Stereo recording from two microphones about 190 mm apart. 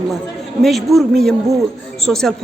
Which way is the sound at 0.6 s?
Centre (ahead or behind).